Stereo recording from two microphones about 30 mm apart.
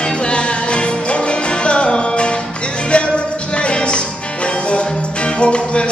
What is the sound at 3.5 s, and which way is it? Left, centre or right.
Music, left.